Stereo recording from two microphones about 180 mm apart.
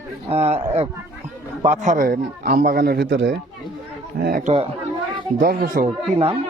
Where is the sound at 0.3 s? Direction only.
35° right (ahead or behind).